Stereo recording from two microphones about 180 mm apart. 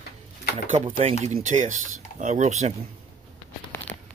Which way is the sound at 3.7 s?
10° left (ahead or behind).